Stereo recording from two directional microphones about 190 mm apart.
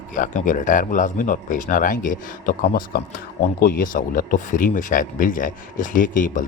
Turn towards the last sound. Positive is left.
turn(degrees=45)  # may be behind; listen again after turning